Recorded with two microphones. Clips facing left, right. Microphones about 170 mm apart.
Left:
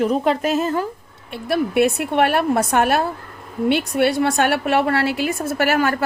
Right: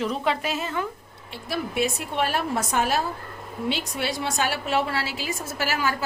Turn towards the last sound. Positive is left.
turn(degrees=60)  # may be behind; listen again after turning